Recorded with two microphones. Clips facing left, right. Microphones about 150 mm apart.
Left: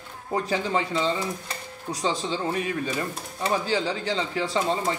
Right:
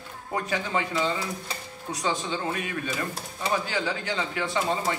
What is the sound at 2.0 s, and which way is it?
Speech, 30° left (ahead or behind).